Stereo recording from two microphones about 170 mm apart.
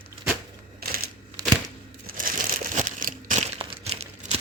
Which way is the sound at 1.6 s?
55° right (ahead or behind).